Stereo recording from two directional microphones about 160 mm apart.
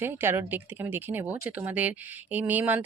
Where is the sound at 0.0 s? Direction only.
15° right (ahead or behind).